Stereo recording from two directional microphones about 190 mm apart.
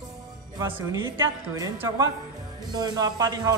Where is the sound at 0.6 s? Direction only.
10° right (ahead or behind).